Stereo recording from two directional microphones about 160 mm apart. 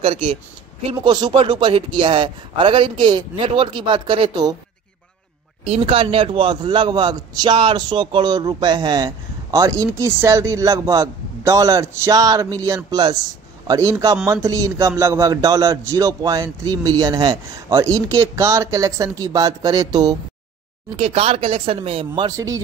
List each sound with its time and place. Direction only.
0.0 s speech: 35° right (ahead or behind)
5.6 s a man's voice: 40° right (ahead or behind)
20.9 s speech: 40° right (ahead or behind); by 22.6 s 20° right (ahead or behind)